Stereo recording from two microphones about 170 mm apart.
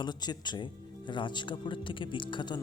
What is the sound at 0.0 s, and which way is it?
Speech, 25° left (ahead or behind).